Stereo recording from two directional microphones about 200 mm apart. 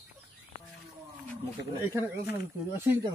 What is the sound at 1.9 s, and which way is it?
Speech, 15° right (ahead or behind).